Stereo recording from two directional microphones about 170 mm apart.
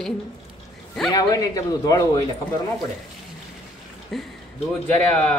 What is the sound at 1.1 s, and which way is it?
A man's voice, 20° left (ahead or behind).